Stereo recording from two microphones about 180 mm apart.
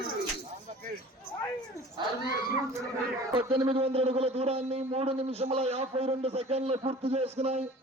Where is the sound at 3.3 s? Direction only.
25° right (ahead or behind).